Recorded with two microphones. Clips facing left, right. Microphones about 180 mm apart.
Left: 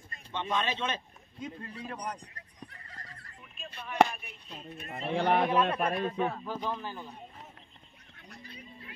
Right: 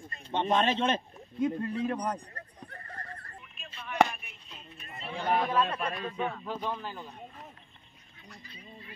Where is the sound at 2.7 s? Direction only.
55° right (ahead or behind).